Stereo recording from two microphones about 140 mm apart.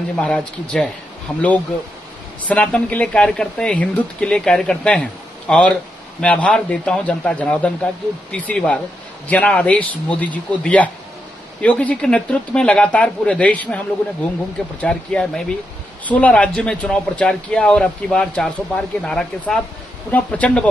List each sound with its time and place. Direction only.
0.2 s speech: 5° left (ahead or behind)